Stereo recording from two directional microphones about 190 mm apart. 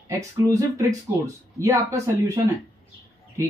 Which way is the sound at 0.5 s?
15° right (ahead or behind).